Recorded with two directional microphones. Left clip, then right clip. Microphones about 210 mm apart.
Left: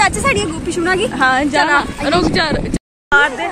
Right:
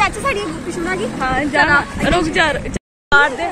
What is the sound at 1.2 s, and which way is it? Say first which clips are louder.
Speech: left 1 dB; 20° left (ahead or behind).